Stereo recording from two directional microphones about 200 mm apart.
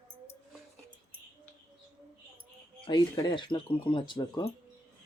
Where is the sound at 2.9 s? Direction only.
20° left (ahead or behind).